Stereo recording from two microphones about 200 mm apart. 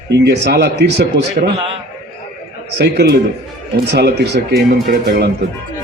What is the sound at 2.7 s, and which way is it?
A man's voice, 55° right (ahead or behind).